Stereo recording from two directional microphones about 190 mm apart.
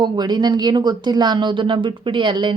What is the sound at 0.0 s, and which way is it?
A woman's voice, 20° right (ahead or behind).